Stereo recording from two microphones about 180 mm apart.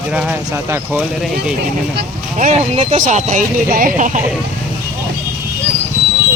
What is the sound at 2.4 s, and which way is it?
Speech, 35° right (ahead or behind).